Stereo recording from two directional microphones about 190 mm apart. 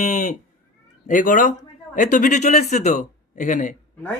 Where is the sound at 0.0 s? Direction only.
40° left (ahead or behind).